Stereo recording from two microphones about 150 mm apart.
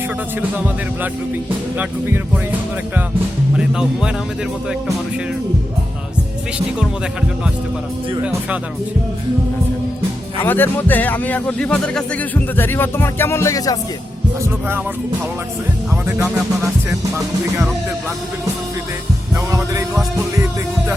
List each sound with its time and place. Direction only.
1.8 s speech: 10° right (ahead or behind)
10.4 s speech: 15° left (ahead or behind)
16.0 s music: 20° right (ahead or behind)
19.5 s music: 20° right (ahead or behind)